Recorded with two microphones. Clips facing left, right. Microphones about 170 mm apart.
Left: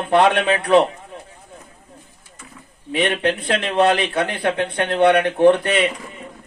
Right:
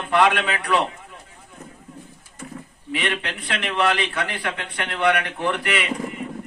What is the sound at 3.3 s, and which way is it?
Speech, 25° left (ahead or behind).